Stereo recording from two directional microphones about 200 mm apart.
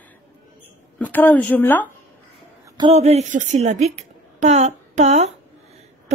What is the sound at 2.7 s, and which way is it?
A woman's voice, 25° right (ahead or behind).